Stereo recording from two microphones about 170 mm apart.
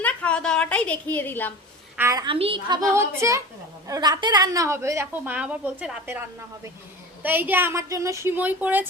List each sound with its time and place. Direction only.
0.0 s a woman's voice: 10° left (ahead or behind)
2.0 s a woman's voice: 15° right (ahead or behind)
2.2 s a woman's voice: 30° right (ahead or behind)
2.9 s a woman's voice: 15° right (ahead or behind)